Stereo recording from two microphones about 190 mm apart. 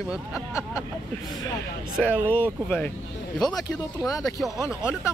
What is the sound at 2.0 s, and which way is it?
Speech, 10° left (ahead or behind).